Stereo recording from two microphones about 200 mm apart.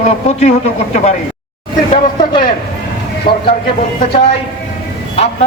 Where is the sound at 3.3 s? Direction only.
25° left (ahead or behind).